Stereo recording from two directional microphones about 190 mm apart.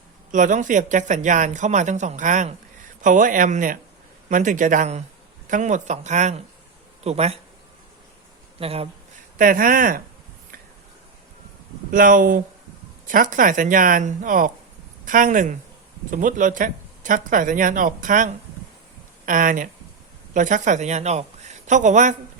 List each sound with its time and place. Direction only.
0.3 s speech: 40° right (ahead or behind)
8.5 s speech: 30° right (ahead or behind)
9.4 s speech: 45° right (ahead or behind)
11.9 s a woman's voice: 45° right (ahead or behind)